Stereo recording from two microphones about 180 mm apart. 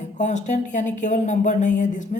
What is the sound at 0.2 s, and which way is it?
Speech, 40° left (ahead or behind).